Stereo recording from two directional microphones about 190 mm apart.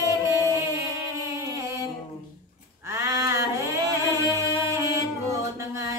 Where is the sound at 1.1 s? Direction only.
15° right (ahead or behind).